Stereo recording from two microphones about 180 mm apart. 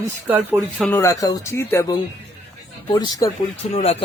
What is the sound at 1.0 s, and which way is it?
Speech, 20° left (ahead or behind).